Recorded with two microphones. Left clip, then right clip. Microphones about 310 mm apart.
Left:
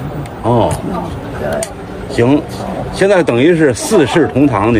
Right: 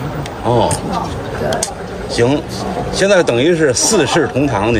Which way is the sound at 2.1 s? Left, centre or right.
Centre.